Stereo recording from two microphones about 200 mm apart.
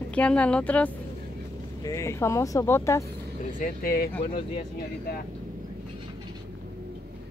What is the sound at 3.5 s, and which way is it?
Speech, 45° left (ahead or behind).